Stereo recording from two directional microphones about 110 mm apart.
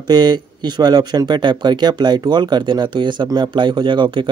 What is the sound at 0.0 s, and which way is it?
A man's voice, 40° right (ahead or behind).